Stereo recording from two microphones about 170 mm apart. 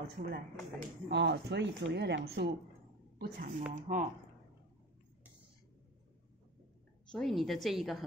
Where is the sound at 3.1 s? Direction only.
70° right (ahead or behind).